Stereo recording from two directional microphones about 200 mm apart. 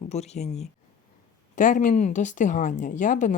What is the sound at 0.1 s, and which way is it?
A woman's voice, 35° left (ahead or behind).